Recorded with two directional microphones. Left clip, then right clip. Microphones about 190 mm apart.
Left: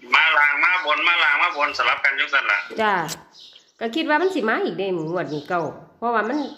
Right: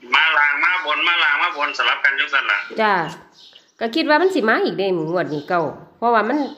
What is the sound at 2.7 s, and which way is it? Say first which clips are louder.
A woman's voice: right 3 dB; 15° right (ahead or behind).